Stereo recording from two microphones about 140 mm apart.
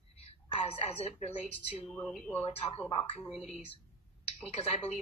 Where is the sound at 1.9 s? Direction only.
5° left (ahead or behind).